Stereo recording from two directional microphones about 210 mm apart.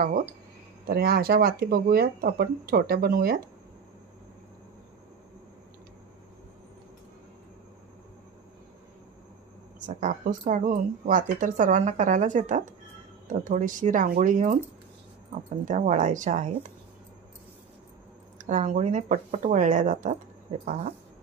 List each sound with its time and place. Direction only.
0.8 s speech: 45° right (ahead or behind)
9.8 s speech: 40° right (ahead or behind)
15.6 s speech: 35° right (ahead or behind)
18.4 s speech: 35° right (ahead or behind)